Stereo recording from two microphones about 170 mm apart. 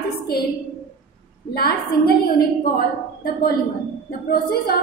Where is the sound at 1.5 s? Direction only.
65° left (ahead or behind).